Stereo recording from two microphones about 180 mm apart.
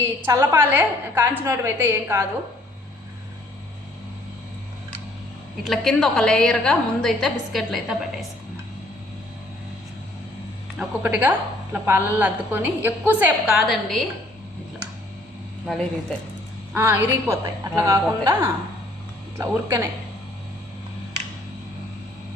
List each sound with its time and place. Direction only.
0.3 s a woman's voice: 15° right (ahead or behind)
5.6 s a woman's voice: centre (ahead or behind)
10.8 s a woman's voice: 10° right (ahead or behind)
15.6 s a woman's voice: centre (ahead or behind)
16.7 s a woman's voice: 15° right (ahead or behind)
19.4 s a woman's voice: 15° right (ahead or behind)